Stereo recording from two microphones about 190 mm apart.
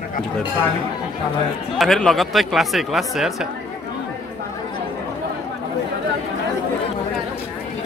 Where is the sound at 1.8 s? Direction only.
Centre (ahead or behind).